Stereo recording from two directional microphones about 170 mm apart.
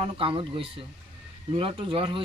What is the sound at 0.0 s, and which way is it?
Speech, 30° right (ahead or behind).